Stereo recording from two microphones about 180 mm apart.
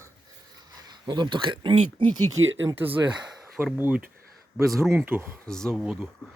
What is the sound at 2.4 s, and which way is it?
Speech, 90° right.